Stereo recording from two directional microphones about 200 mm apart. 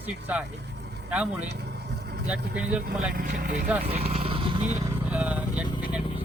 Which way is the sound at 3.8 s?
30° right (ahead or behind).